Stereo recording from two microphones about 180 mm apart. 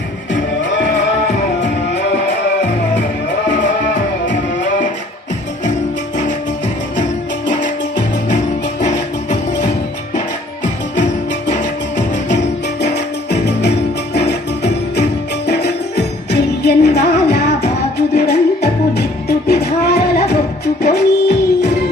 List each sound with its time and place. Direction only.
7.6 s music: 45° left (ahead or behind)
11.4 s music: 40° left (ahead or behind)
12.8 s music: 70° left (ahead or behind)